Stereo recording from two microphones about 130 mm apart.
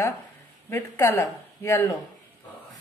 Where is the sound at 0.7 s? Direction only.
20° left (ahead or behind).